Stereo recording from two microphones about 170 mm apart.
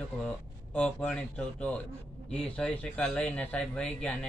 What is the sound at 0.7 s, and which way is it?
Speech, 5° left (ahead or behind).